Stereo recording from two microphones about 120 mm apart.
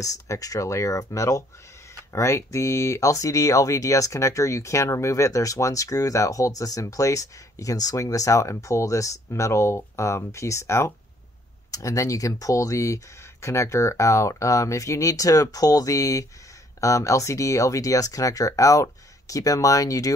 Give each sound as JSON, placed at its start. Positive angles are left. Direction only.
{"t": 0.0, "sound": "speech", "side_deg": 30}